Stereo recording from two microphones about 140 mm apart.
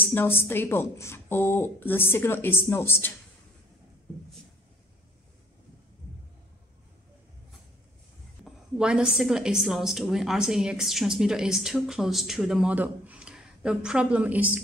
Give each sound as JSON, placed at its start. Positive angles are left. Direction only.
{"t": 0.0, "sound": "speech", "side_deg": 15}
{"t": 8.5, "sound": "a woman's voice", "side_deg": -5}